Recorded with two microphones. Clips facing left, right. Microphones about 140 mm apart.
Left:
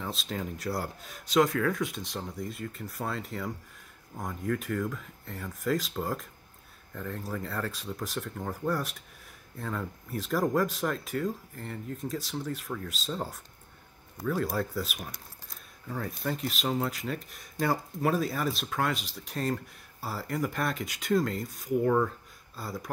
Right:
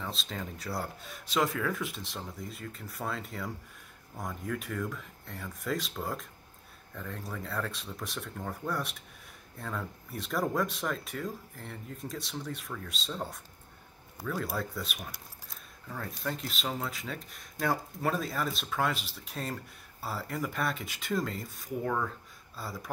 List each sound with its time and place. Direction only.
0.0 s speech: centre (ahead or behind)